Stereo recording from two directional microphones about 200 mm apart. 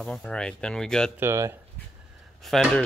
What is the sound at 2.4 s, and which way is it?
Speech, 5° left (ahead or behind).